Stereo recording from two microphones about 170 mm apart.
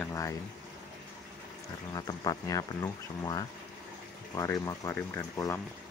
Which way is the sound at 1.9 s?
20° left (ahead or behind).